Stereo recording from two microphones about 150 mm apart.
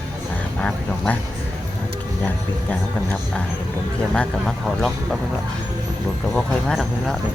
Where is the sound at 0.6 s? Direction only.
5° left (ahead or behind).